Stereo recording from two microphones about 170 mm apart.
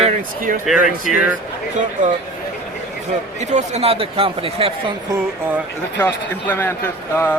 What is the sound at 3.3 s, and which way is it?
A man's voice, 45° right (ahead or behind).